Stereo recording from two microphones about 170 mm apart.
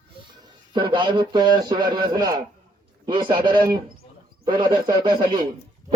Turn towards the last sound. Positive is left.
turn(degrees=-30)  # may be behind; listen again after turning